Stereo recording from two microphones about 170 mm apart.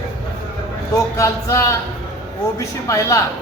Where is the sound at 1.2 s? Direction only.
15° left (ahead or behind).